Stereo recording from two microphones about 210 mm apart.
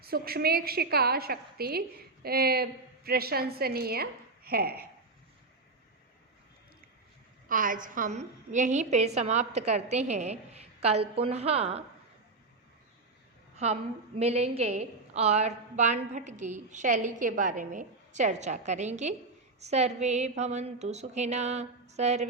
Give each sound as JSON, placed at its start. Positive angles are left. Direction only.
{"t": 0.0, "sound": "a woman's voice", "side_deg": -45}
{"t": 7.4, "sound": "a woman's voice", "side_deg": -40}
{"t": 14.2, "sound": "a woman's voice", "side_deg": -30}